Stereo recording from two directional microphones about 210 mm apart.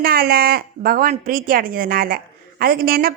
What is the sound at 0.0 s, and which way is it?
A woman's voice, 45° right (ahead or behind).